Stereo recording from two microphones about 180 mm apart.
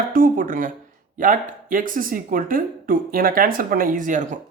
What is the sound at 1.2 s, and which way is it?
Speech, 50° right (ahead or behind).